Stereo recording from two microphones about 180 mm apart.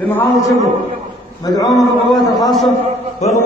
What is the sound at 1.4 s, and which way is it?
Speech, 20° left (ahead or behind).